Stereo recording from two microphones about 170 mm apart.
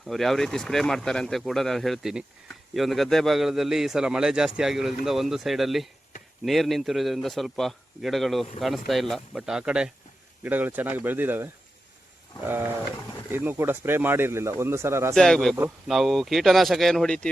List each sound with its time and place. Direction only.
0.0 s a man's voice: centre (ahead or behind); by 15.1 s 15° right (ahead or behind)
15.1 s a man's voice: 5° left (ahead or behind)